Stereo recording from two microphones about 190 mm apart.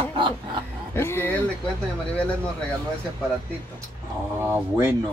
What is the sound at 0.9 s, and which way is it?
Speech, 10° left (ahead or behind).